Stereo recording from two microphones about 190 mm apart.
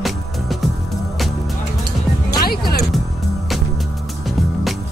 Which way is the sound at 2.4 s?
55° left (ahead or behind).